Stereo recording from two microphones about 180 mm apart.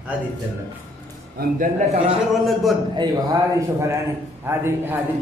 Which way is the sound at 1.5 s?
40° right (ahead or behind).